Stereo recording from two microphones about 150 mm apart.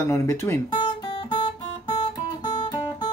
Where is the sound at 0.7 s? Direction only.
30° left (ahead or behind).